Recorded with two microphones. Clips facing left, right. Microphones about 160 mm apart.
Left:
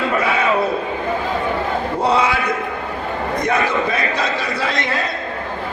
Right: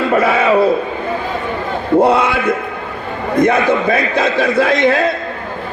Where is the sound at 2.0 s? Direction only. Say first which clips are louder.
Right 6 dB; 55° right (ahead or behind).